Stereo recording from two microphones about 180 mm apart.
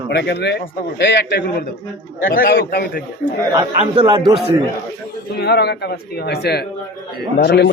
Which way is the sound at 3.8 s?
30° right (ahead or behind).